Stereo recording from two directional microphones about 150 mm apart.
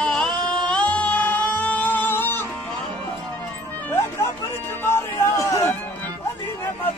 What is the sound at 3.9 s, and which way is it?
Music, 15° left (ahead or behind).